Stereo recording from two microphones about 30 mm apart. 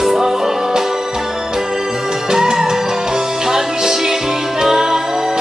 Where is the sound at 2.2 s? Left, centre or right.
Centre.